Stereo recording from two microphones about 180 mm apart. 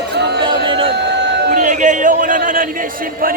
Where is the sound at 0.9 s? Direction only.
70° right (ahead or behind).